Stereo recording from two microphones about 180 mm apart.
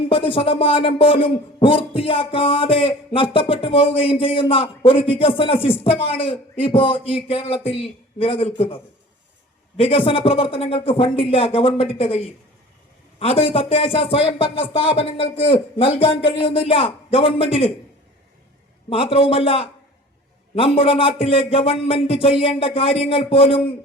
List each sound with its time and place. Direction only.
0.1 s speech: 30° left (ahead or behind)
18.9 s speech: 30° left (ahead or behind)